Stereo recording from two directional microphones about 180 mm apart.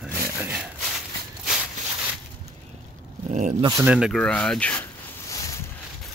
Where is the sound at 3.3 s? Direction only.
45° right (ahead or behind).